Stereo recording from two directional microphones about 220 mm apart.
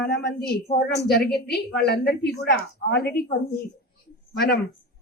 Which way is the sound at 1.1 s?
45° left (ahead or behind).